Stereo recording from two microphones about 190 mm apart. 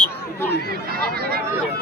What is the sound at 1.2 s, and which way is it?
Speech, 55° right (ahead or behind).